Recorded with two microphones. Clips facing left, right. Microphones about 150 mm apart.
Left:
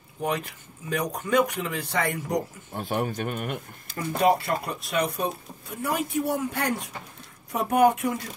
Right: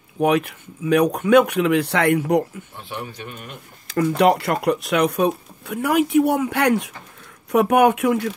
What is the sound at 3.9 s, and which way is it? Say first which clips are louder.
Speech: right 6 dB; 75° right (ahead or behind).